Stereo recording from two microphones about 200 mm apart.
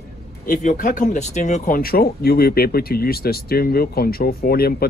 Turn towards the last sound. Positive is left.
turn(degrees=50)  # may be behind; listen again after turning